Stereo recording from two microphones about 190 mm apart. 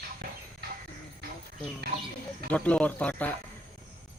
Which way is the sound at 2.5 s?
5° left (ahead or behind).